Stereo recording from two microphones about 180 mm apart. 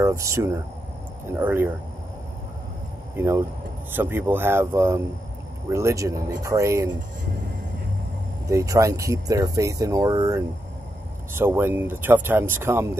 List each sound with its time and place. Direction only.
0.0 s speech: 15° right (ahead or behind)
3.2 s speech: 15° right (ahead or behind)
8.5 s speech: 15° right (ahead or behind)